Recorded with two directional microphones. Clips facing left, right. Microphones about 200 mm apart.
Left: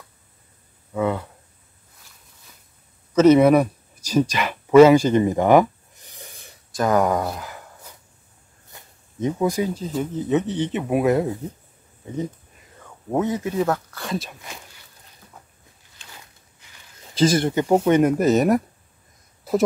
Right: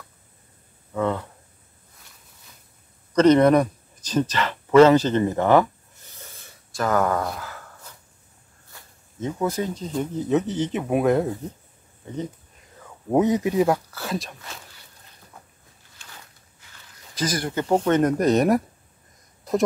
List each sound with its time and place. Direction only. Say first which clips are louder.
0.9 s speech: left 1 dB; 10° left (ahead or behind)
3.1 s a sound: left 2 dB; 5° left (ahead or behind)
8.7 s speech: left 4 dB; 15° left (ahead or behind)
13.1 s speech: right 3 dB; 15° right (ahead or behind); by 14.3 s centre (ahead or behind)
17.1 s speech: left 8 dB; 25° left (ahead or behind)
17.6 s speech: left 2 dB; 10° left (ahead or behind)